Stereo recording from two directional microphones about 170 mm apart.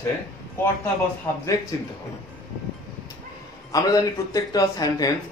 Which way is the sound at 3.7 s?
20° left (ahead or behind).